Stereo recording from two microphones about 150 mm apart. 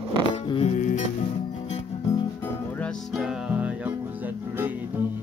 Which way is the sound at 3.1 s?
5° right (ahead or behind).